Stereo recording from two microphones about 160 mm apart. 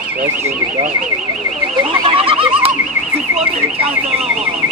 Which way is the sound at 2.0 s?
35° right (ahead or behind).